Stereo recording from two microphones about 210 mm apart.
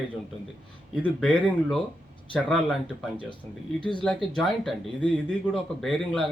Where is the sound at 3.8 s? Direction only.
25° left (ahead or behind).